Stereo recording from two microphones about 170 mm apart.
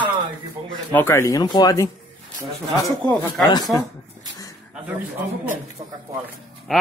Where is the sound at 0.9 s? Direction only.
15° left (ahead or behind).